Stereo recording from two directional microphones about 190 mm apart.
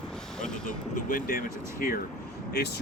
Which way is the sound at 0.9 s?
45° left (ahead or behind).